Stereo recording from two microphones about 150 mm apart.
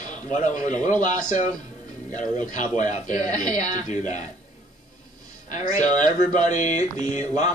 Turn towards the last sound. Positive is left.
turn(degrees=50)  # may be behind; listen again after turning